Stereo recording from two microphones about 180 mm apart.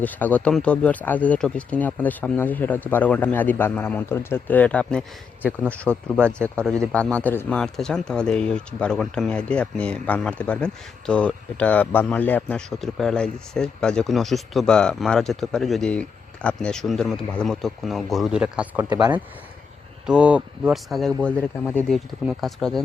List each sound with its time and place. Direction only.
0.0 s speech: 10° left (ahead or behind); by 18.9 s 5° right (ahead or behind)
18.9 s speech: 25° right (ahead or behind)
20.1 s speech: 5° right (ahead or behind)